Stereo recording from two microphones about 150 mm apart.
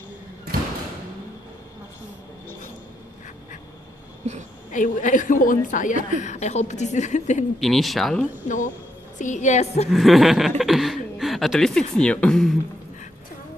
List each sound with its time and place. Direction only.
4.6 s a woman's voice: 60° left (ahead or behind)
7.6 s speech: centre (ahead or behind)
8.5 s a woman's voice: 60° left (ahead or behind)
9.8 s speech: centre (ahead or behind)
10.6 s chuckle: centre (ahead or behind)
11.9 s speech: 5° left (ahead or behind)